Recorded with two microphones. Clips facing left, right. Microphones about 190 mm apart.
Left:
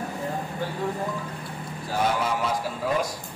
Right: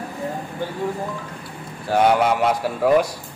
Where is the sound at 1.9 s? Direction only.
65° right (ahead or behind).